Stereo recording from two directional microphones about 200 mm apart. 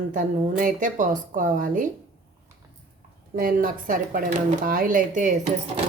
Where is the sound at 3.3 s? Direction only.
45° right (ahead or behind).